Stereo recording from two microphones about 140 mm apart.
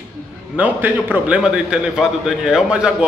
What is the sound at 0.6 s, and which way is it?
A man's voice, 15° right (ahead or behind).